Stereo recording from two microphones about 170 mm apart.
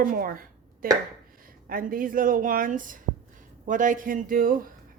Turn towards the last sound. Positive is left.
turn(degrees=-55)  # may be behind; listen again after turning